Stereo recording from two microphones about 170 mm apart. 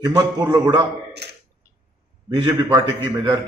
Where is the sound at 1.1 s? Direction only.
75° right (ahead or behind).